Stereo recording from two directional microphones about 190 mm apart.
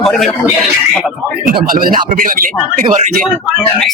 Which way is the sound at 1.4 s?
50° right (ahead or behind).